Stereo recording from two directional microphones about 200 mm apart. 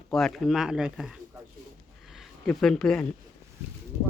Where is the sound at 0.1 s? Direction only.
Centre (ahead or behind).